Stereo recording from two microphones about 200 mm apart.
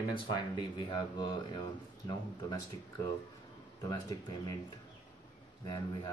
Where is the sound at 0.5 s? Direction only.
20° left (ahead or behind).